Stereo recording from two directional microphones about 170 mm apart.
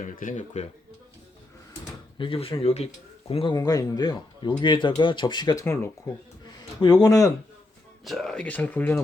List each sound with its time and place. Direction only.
0.0 s speech: 50° left (ahead or behind)
2.1 s speech: 30° left (ahead or behind)
6.4 s a sound: 25° left (ahead or behind)
8.0 s speech: centre (ahead or behind)